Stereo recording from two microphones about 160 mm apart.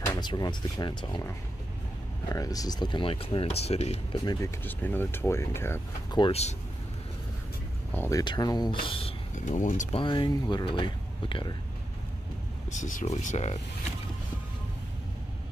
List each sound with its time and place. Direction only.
0.2 s speech: 25° left (ahead or behind)
2.2 s speech: 20° left (ahead or behind); by 4.0 s 40° left (ahead or behind)
4.1 s speech: 25° left (ahead or behind)
4.6 s speech: 10° left (ahead or behind)
6.1 s speech: 30° left (ahead or behind)
7.9 s speech: 15° left (ahead or behind)
8.2 s speech: 25° left (ahead or behind)
9.3 s speech: 50° left (ahead or behind)
9.9 s speech: 30° left (ahead or behind)
12.7 s speech: 50° left (ahead or behind)